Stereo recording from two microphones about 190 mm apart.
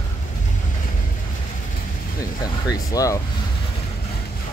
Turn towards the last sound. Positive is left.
turn(degrees=20)  # may be behind; listen again after turning